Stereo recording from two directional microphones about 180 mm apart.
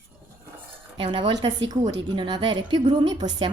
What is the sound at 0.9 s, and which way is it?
Speech, 25° right (ahead or behind).